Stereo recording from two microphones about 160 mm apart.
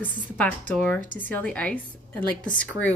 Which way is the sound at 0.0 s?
10° left (ahead or behind).